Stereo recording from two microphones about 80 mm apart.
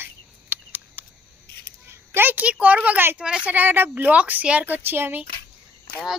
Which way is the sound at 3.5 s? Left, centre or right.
Right.